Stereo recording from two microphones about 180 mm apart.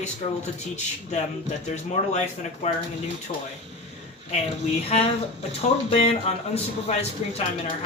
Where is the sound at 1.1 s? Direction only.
40° left (ahead or behind).